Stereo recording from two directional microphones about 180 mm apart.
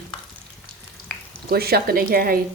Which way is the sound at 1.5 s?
60° right (ahead or behind).